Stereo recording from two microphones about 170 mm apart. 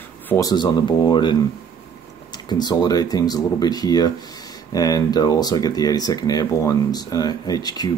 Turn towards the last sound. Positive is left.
turn(degrees=25)  # may be behind; listen again after turning